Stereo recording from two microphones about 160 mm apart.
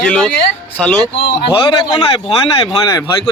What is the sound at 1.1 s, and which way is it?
Speech, 30° left (ahead or behind).